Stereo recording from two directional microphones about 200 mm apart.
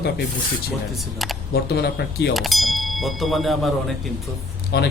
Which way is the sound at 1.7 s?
55° left (ahead or behind).